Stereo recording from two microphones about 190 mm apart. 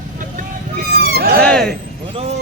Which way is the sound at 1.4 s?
5° left (ahead or behind).